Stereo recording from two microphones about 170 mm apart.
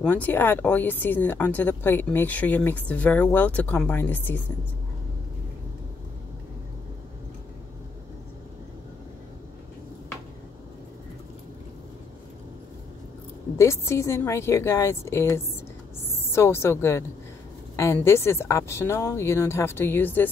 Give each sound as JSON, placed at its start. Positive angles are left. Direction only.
{"t": 0.0, "sound": "speech", "side_deg": 10}
{"t": 13.6, "sound": "a woman's voice", "side_deg": 15}